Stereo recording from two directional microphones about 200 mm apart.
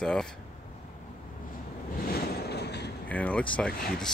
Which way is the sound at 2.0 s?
50° left (ahead or behind).